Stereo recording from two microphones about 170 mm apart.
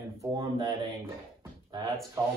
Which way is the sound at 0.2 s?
20° right (ahead or behind).